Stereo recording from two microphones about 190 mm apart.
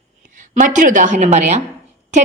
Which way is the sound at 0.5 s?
40° right (ahead or behind).